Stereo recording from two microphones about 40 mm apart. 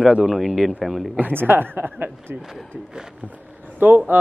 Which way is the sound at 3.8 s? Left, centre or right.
Right.